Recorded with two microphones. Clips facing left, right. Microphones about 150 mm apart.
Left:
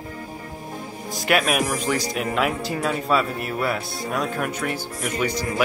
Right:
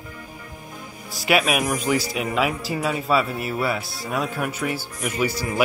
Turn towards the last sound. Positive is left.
turn(degrees=-5)  # may be behind; listen again after turning